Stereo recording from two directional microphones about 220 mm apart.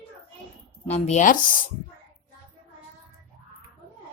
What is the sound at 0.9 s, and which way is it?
Speech, 30° left (ahead or behind).